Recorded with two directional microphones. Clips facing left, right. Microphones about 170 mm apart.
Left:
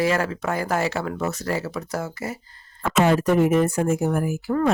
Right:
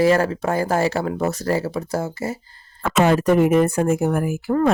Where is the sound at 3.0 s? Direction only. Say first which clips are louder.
Right 2 dB; 65° right (ahead or behind).